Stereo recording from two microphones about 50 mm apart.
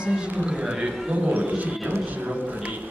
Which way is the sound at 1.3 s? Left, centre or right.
Right.